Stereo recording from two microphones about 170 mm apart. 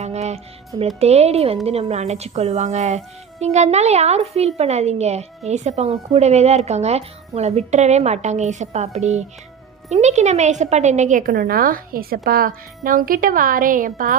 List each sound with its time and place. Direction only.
0.0 s music: 40° right (ahead or behind)
0.9 s a woman's voice: 40° right (ahead or behind)